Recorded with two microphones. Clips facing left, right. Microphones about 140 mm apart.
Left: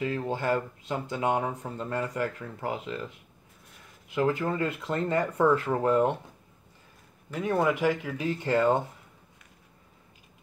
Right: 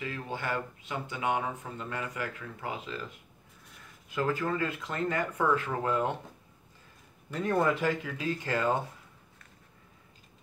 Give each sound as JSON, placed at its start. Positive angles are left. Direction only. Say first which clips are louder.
{"t": 0.0, "sound": "speech", "louder": "left 7 dB", "side_deg": 35}
{"t": 2.7, "sound": "speech", "louder": "left 4 dB", "side_deg": 25}
{"t": 4.1, "sound": "speech", "louder": "left 3 dB", "side_deg": 20}
{"t": 7.3, "sound": "speech", "louder": "left 2 dB", "side_deg": 10}